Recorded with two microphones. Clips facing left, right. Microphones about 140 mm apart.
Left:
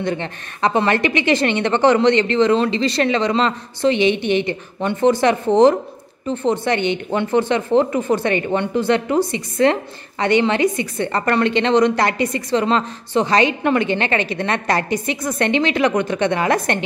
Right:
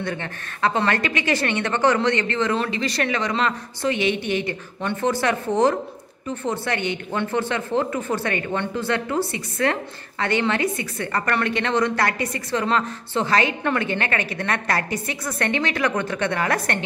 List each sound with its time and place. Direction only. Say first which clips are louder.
0.0 s a woman's voice: left 6 dB; 20° left (ahead or behind)